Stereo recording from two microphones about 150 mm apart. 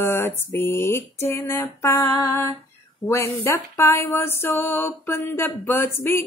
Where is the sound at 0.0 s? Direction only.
15° left (ahead or behind).